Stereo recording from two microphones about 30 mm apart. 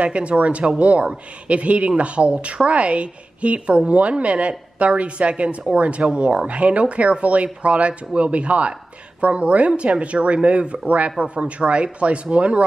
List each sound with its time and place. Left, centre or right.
0.0 s a woman's voice: right
6.5 s a woman's voice: right